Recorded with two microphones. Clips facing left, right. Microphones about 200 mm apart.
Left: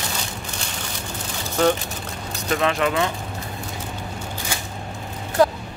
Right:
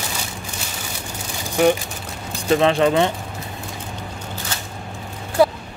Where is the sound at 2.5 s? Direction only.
30° right (ahead or behind).